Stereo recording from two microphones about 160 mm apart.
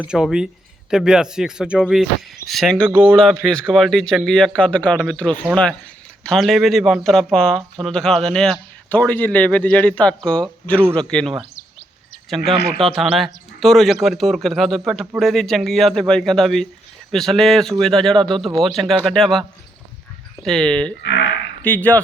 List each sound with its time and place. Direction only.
0.0 s speech: 5° right (ahead or behind)
12.8 s speech: centre (ahead or behind)
21.0 s a sound: 90° left
21.6 s speech: 10° left (ahead or behind)